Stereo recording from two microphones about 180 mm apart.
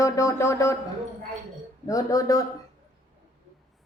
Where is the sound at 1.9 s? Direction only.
20° left (ahead or behind).